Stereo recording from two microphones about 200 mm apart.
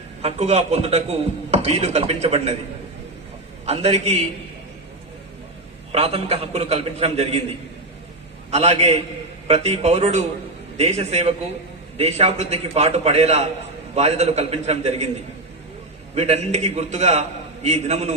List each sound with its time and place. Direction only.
0.2 s a man's voice: 30° right (ahead or behind)
3.7 s a man's voice: 30° right (ahead or behind)
5.9 s a man's voice: 30° right (ahead or behind)
8.4 s a man's voice: 30° right (ahead or behind)
16.1 s a man's voice: 30° right (ahead or behind)